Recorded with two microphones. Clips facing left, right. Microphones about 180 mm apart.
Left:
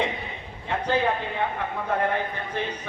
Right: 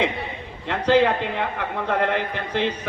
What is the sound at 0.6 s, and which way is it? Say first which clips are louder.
A man's voice: right 6 dB; 90° right.